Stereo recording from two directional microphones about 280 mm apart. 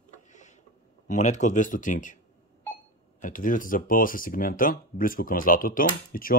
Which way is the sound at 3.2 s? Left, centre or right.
Left.